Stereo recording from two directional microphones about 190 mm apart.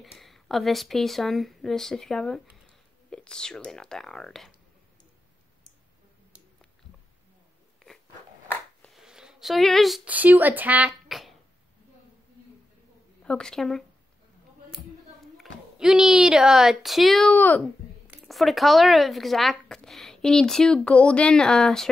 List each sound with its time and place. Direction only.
0.0 s speech: centre (ahead or behind)
8.8 s speech: centre (ahead or behind)
13.2 s speech: 5° left (ahead or behind)
15.3 s a woman's voice: centre (ahead or behind)